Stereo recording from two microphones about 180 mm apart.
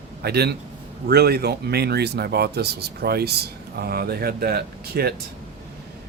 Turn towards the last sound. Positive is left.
turn(degrees=-60)  # may be behind; listen again after turning